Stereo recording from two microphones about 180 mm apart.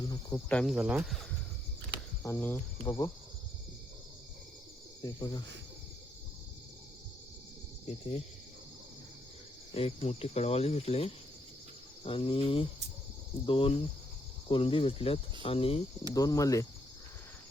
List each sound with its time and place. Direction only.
0.0 s cricket: 20° left (ahead or behind)
0.4 s speech: 5° left (ahead or behind)
2.2 s speech: 15° left (ahead or behind)
5.0 s speech: 20° left (ahead or behind)
7.9 s speech: 35° left (ahead or behind)
9.7 s speech: 35° left (ahead or behind)
16.1 s speech: 20° left (ahead or behind)